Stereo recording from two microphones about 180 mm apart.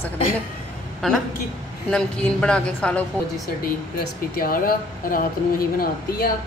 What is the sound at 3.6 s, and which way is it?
Speech, 55° left (ahead or behind).